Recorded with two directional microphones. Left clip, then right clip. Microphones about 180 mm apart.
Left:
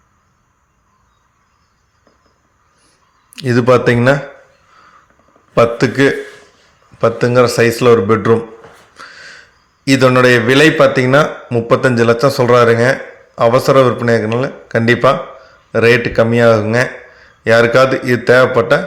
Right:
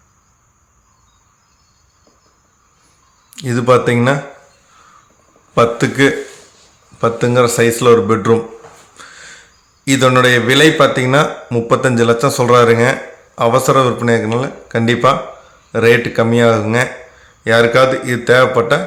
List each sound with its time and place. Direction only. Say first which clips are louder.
3.3 s speech: left 1 dB; 20° left (ahead or behind)
5.5 s a man's voice: left 1 dB; 10° left (ahead or behind)
9.0 s snort: left 3 dB; 10° left (ahead or behind)
9.8 s a man's voice: left 1 dB; 10° left (ahead or behind)